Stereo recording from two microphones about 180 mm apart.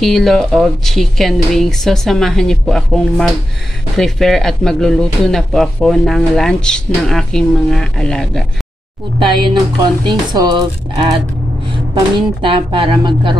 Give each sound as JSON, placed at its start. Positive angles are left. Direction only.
{"t": 0.0, "sound": "speech", "side_deg": 0}
{"t": 9.5, "sound": "speech", "side_deg": -25}